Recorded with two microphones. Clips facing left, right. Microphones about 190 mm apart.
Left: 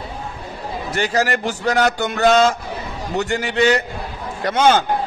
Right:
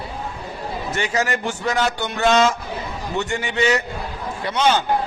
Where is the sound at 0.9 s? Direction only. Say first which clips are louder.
Left 4 dB; 35° left (ahead or behind).